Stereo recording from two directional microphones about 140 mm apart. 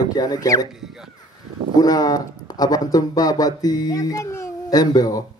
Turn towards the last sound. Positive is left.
turn(degrees=25)  # may be behind; listen again after turning